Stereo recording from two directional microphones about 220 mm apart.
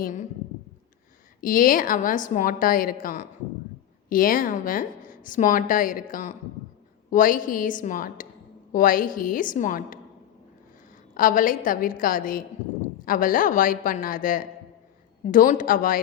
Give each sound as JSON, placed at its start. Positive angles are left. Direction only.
{"t": 0.0, "sound": "a woman's voice", "side_deg": 35}
{"t": 1.4, "sound": "a woman's voice", "side_deg": 40}
{"t": 11.1, "sound": "a woman's voice", "side_deg": 35}